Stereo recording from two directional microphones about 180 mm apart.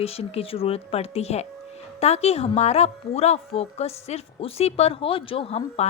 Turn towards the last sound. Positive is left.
turn(degrees=35)  # may be behind; listen again after turning